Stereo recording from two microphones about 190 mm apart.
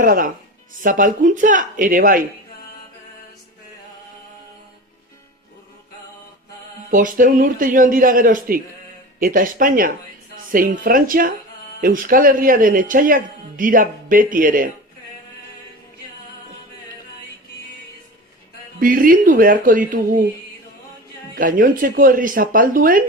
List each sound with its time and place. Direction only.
0.0 s speech: 45° right (ahead or behind)
6.9 s a woman's voice: 45° right (ahead or behind)
18.8 s speech: 45° right (ahead or behind)
21.3 s speech: 45° right (ahead or behind)